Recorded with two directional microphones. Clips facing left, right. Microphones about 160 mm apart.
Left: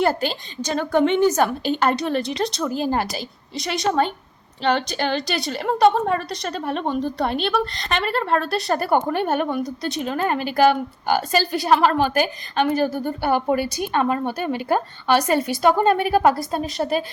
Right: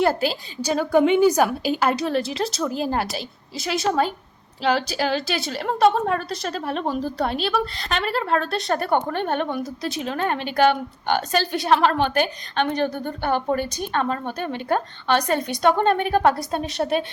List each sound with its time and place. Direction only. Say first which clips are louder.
0.0 s a woman's voice: even; centre (ahead or behind)